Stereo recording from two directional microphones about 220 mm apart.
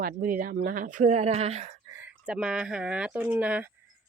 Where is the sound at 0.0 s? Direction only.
40° right (ahead or behind).